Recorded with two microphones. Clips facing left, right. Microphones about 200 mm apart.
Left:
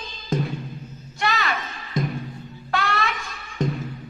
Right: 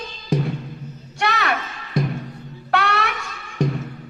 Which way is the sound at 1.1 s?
70° right (ahead or behind).